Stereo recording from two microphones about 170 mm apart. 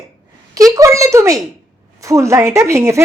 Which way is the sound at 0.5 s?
20° right (ahead or behind).